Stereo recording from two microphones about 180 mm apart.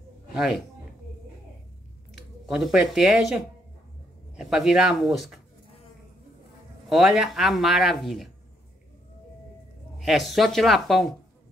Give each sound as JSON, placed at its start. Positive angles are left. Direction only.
{"t": 0.3, "sound": "a sound", "side_deg": 0}
{"t": 2.4, "sound": "speech", "side_deg": 0}
{"t": 6.9, "sound": "speech", "side_deg": 0}
{"t": 9.9, "sound": "speech", "side_deg": 0}